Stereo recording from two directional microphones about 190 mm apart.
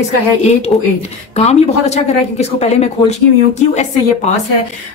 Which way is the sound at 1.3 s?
35° left (ahead or behind).